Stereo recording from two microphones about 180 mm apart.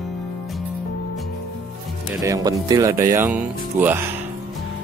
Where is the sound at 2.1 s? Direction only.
20° right (ahead or behind).